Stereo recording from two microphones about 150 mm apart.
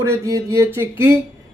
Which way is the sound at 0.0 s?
20° right (ahead or behind).